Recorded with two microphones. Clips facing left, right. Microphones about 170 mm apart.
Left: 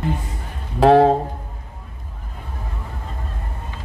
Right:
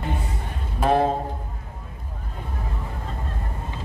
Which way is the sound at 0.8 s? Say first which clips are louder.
Left 8 dB; 90° left.